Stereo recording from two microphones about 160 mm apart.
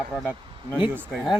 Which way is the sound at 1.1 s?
Centre (ahead or behind).